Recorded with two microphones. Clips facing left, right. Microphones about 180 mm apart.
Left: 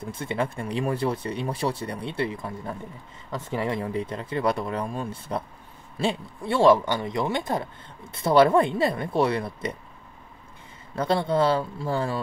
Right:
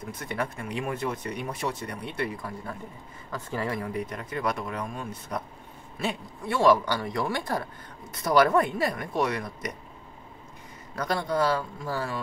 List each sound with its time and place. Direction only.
0.0 s speech: 25° left (ahead or behind)
11.0 s speech: 25° left (ahead or behind)